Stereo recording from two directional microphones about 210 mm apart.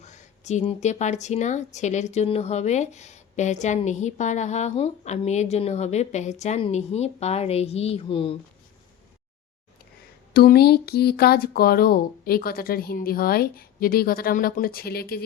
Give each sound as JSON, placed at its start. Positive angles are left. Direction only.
{"t": 0.0, "sound": "speech", "side_deg": 35}
{"t": 10.3, "sound": "speech", "side_deg": 50}